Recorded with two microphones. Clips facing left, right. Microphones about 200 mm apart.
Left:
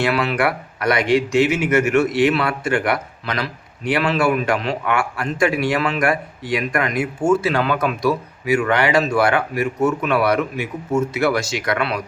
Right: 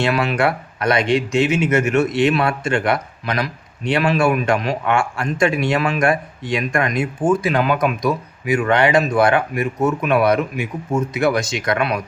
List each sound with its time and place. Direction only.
0.0 s speech: 20° right (ahead or behind)